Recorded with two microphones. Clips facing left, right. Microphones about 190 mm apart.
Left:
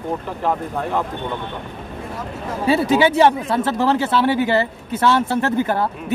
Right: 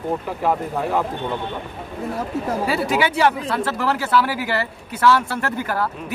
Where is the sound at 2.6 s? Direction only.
25° left (ahead or behind).